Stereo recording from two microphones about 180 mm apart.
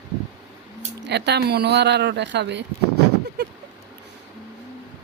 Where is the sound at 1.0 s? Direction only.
70° right (ahead or behind).